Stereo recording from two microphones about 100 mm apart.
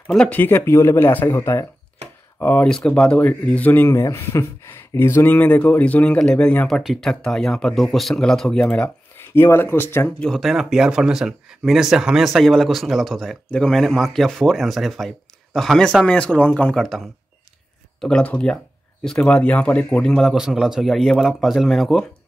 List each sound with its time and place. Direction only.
0.3 s speech: 20° left (ahead or behind)
2.7 s speech: 10° left (ahead or behind)
6.7 s speech: centre (ahead or behind); by 10.1 s 20° left (ahead or behind)
10.2 s speech: 5° left (ahead or behind)
16.8 s speech: centre (ahead or behind)
20.3 s speech: 5° right (ahead or behind)